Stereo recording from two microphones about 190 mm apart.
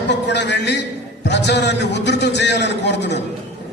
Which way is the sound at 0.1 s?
65° left (ahead or behind).